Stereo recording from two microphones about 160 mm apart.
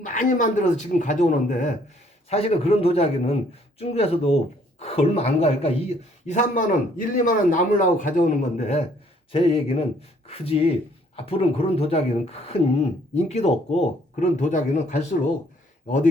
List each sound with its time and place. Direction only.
0.0 s speech: 55° left (ahead or behind)
2.3 s a man's voice: 40° left (ahead or behind)